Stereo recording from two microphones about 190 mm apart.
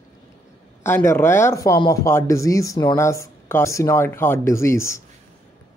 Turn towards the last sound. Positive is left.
turn(degrees=15)  # may be behind; listen again after turning